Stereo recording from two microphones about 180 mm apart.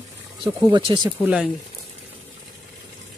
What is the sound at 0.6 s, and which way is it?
Speech, 25° right (ahead or behind).